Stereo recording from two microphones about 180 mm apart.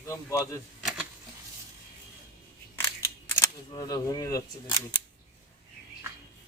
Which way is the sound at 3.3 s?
20° left (ahead or behind).